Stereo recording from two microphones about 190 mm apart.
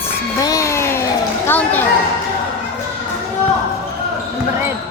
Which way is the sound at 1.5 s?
10° left (ahead or behind).